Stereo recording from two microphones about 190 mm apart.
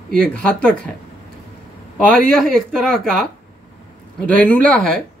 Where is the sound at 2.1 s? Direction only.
5° left (ahead or behind).